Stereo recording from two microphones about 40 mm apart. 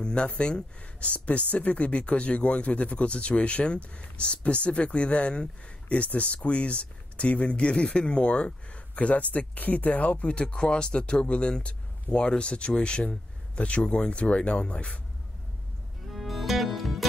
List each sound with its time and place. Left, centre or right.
0.0 s speech: left
16.1 s music: centre